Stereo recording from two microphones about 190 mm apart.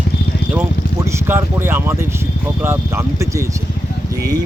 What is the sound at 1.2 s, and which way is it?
Speech, 10° right (ahead or behind).